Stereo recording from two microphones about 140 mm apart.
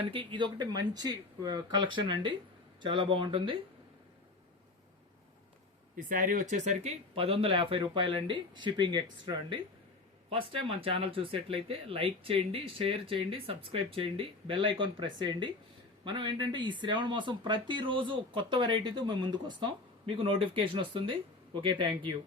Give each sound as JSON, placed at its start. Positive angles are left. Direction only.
{"t": 0.1, "sound": "speech", "side_deg": -35}
{"t": 6.0, "sound": "speech", "side_deg": -80}
{"t": 10.2, "sound": "speech", "side_deg": -40}